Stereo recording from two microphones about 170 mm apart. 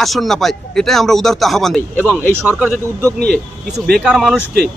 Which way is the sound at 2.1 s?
5° right (ahead or behind).